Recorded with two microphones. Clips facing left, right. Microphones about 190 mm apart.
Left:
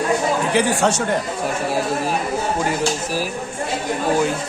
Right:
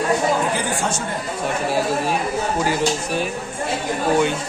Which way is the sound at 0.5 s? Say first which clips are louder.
Left 5 dB; 70° left (ahead or behind).